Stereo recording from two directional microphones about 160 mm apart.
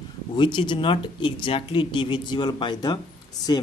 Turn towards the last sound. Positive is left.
turn(degrees=30)  # may be behind; listen again after turning